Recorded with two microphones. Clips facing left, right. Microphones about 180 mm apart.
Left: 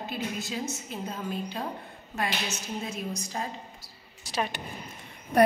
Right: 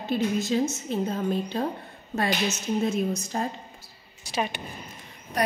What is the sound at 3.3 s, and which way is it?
Speech, 45° right (ahead or behind).